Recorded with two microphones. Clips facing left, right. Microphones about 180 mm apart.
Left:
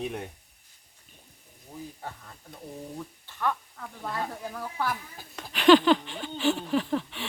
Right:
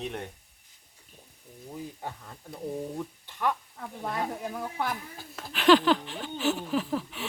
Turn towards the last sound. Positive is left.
turn(degrees=-5)  # may be behind; listen again after turning